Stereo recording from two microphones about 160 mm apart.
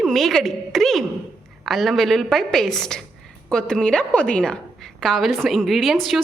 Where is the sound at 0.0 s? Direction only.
Centre (ahead or behind).